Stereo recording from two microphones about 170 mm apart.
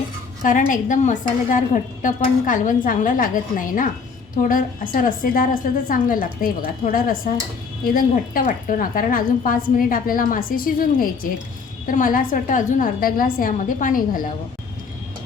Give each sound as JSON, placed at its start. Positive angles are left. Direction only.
{"t": 0.4, "sound": "a woman's voice", "side_deg": 50}